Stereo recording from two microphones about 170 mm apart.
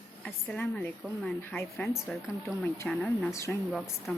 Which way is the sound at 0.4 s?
10° left (ahead or behind).